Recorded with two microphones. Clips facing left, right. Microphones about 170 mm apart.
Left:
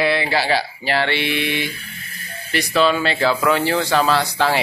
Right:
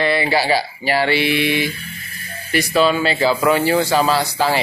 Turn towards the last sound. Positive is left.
turn(degrees=-5)  # may be behind; listen again after turning